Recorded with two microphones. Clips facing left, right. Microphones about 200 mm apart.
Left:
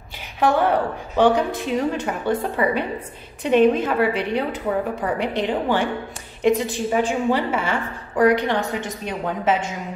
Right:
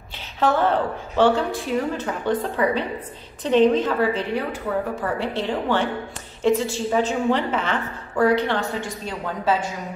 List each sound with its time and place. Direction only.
0.4 s a woman's voice: 15° left (ahead or behind)
2.2 s a woman's voice: 10° left (ahead or behind)